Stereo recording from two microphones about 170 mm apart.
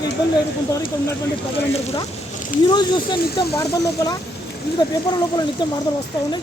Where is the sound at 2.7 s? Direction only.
30° left (ahead or behind).